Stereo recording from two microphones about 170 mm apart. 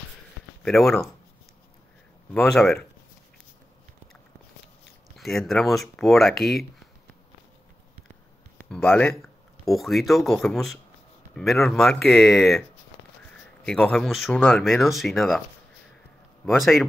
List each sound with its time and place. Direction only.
0.6 s speech: 5° left (ahead or behind)
2.3 s speech: 5° left (ahead or behind)
5.1 s speech: centre (ahead or behind)
8.5 s speech: 10° left (ahead or behind)
13.7 s speech: 5° left (ahead or behind)
16.4 s speech: centre (ahead or behind)